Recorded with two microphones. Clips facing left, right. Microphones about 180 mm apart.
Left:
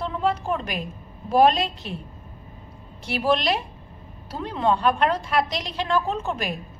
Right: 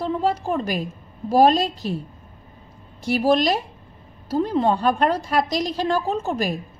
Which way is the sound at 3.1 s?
40° right (ahead or behind).